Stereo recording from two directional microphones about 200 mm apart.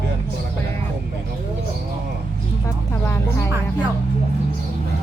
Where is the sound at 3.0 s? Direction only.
10° left (ahead or behind).